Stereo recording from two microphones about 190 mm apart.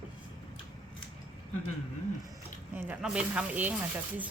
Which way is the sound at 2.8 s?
5° right (ahead or behind).